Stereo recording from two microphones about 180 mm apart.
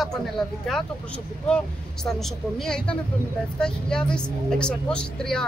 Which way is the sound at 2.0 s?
Centre (ahead or behind).